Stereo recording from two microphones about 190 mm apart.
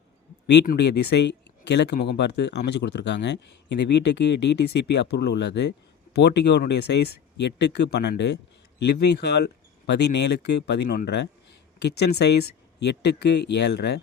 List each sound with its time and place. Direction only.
0.8 s speech: 60° left (ahead or behind)